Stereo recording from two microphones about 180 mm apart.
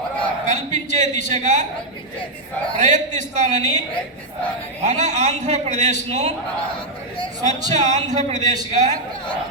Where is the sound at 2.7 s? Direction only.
40° right (ahead or behind).